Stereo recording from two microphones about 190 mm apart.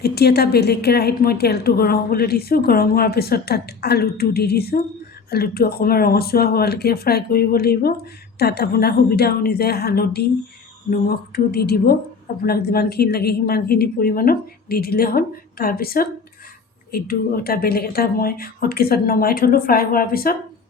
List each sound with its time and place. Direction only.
0.0 s a woman's voice: 55° left (ahead or behind)